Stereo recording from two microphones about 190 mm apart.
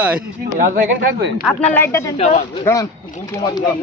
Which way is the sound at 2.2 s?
35° left (ahead or behind).